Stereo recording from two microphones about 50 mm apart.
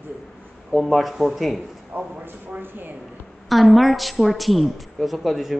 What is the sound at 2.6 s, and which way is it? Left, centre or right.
Speech, right.